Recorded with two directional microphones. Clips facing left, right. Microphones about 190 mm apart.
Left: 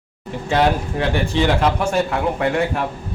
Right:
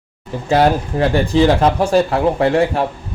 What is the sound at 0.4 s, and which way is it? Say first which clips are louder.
Speech: right 4 dB; 35° right (ahead or behind).